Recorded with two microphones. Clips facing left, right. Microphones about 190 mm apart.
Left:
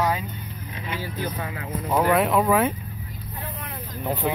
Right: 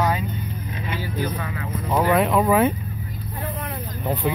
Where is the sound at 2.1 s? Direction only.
Centre (ahead or behind).